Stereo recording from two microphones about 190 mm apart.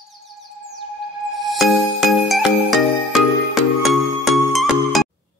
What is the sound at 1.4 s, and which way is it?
Music, centre (ahead or behind).